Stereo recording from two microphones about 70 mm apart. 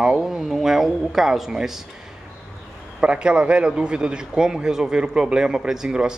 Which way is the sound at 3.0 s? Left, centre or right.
Centre.